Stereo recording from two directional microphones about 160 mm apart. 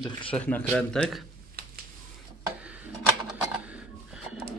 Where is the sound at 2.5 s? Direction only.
10° right (ahead or behind).